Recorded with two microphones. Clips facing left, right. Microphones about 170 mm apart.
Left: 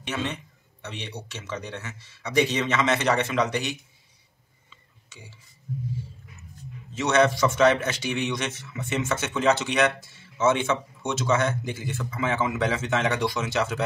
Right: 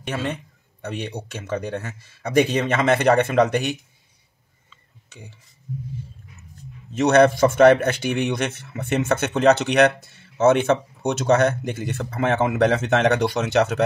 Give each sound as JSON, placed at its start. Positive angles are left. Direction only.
{"t": 0.8, "sound": "speech", "side_deg": -50}
{"t": 5.1, "sound": "speech", "side_deg": -60}
{"t": 6.9, "sound": "speech", "side_deg": -60}